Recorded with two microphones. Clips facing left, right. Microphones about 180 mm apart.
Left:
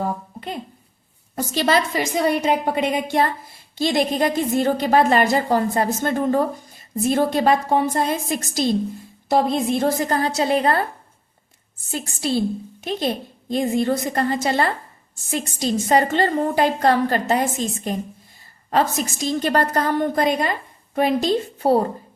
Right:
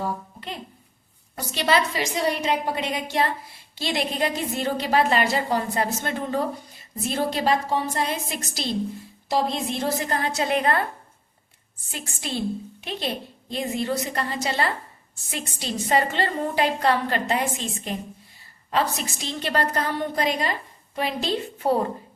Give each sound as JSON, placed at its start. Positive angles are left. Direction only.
{"t": 0.0, "sound": "a sound", "side_deg": 50}
{"t": 1.4, "sound": "a woman's voice", "side_deg": 40}
{"t": 11.9, "sound": "a woman's voice", "side_deg": 40}